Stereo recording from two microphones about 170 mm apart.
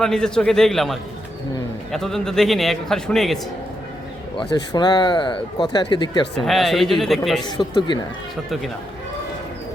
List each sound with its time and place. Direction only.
0.0 s a man's voice: 5° left (ahead or behind)
4.5 s speech: 25° left (ahead or behind)
6.4 s a man's voice: centre (ahead or behind)
7.4 s speech: 25° left (ahead or behind)